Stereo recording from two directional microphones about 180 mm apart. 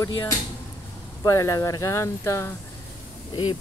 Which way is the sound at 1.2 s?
15° left (ahead or behind).